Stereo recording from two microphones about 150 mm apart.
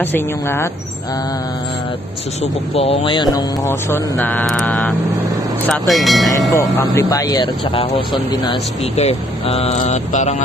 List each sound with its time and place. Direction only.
0.0 s speech: 15° left (ahead or behind)
2.7 s speech: 40° left (ahead or behind)
3.6 s speech: 15° left (ahead or behind)
7.0 s speech: 25° left (ahead or behind)
7.7 s speech: 40° left (ahead or behind)